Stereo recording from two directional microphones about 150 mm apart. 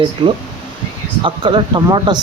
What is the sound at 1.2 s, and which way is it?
Speech, 30° right (ahead or behind).